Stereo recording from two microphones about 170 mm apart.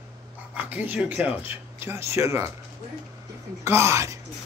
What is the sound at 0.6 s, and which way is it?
Speech, 10° right (ahead or behind).